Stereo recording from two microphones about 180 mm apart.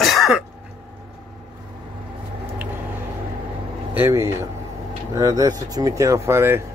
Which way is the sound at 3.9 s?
10° right (ahead or behind).